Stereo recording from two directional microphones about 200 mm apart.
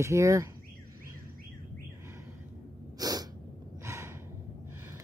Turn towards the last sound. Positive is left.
turn(degrees=-15)  # may be behind; listen again after turning